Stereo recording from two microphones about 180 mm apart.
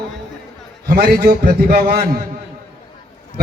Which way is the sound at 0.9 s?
55° right (ahead or behind).